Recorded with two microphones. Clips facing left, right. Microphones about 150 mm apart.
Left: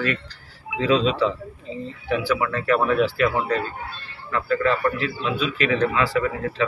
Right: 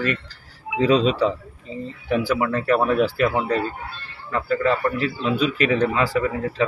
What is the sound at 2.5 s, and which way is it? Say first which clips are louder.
A man's voice: right 1 dB; 40° right (ahead or behind).